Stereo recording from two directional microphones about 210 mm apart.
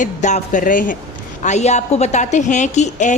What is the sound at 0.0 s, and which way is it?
A woman's voice, 35° left (ahead or behind).